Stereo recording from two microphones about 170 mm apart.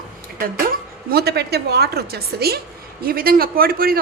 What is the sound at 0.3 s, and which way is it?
A woman's voice, 60° right (ahead or behind).